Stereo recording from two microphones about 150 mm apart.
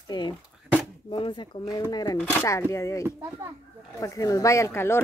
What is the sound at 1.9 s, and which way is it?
Speech, 25° left (ahead or behind).